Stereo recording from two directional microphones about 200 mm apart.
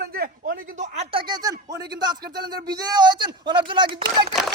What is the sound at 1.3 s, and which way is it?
Speech, 20° right (ahead or behind).